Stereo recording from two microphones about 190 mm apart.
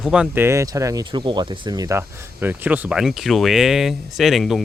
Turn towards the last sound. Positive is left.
turn(degrees=0)  # may be behind; listen again after turning